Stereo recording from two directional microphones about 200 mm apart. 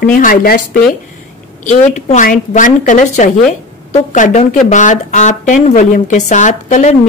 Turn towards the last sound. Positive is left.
turn(degrees=35)  # may be behind; listen again after turning